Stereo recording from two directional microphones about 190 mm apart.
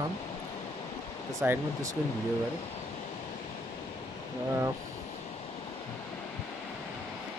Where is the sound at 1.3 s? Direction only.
15° right (ahead or behind).